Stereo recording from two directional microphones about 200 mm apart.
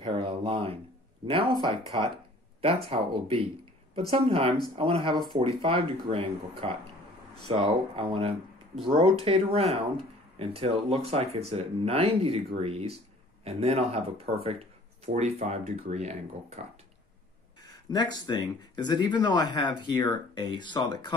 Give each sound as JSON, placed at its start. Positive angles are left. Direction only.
{"t": 0.0, "sound": "a sound", "side_deg": -25}
{"t": 2.6, "sound": "speech", "side_deg": -30}
{"t": 17.9, "sound": "speech", "side_deg": 20}